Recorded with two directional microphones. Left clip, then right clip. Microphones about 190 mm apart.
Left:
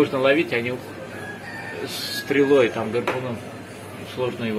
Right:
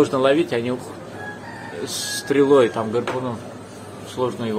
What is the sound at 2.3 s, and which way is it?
Speech, 20° right (ahead or behind).